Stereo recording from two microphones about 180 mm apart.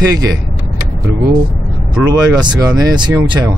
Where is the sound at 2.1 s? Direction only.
20° right (ahead or behind).